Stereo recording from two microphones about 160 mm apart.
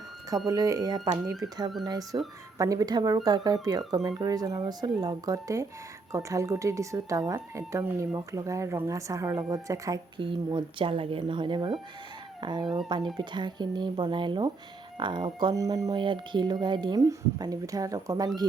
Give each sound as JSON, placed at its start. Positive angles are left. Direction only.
{"t": 0.4, "sound": "speech", "side_deg": -20}
{"t": 10.2, "sound": "speech", "side_deg": -30}